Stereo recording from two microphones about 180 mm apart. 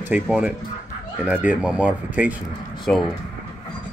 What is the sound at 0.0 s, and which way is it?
Speech, 10° right (ahead or behind).